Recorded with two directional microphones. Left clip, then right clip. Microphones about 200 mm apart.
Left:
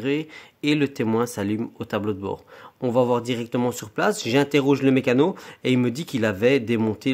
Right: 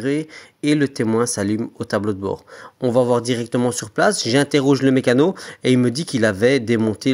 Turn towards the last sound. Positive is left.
turn(degrees=-25)  # may be behind; listen again after turning